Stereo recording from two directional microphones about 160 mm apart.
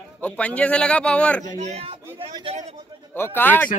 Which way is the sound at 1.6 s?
40° right (ahead or behind).